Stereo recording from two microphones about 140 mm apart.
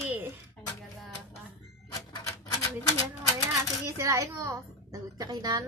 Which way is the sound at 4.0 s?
20° right (ahead or behind).